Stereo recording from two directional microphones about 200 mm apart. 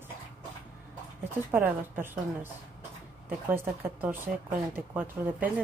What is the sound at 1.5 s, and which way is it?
A woman's voice, 10° right (ahead or behind).